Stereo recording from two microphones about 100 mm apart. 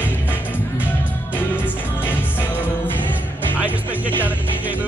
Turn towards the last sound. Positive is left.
turn(degrees=-15)  # may be behind; listen again after turning